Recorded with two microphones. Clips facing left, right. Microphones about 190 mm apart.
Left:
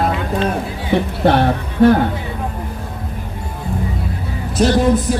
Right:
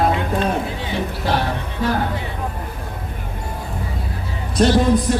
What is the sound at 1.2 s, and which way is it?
Speech, 60° left (ahead or behind).